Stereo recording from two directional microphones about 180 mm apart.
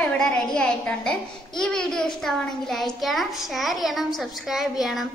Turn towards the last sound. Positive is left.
turn(degrees=0)  # may be behind; listen again after turning